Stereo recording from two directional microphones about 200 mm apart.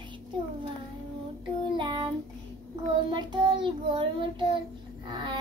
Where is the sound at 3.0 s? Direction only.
20° right (ahead or behind).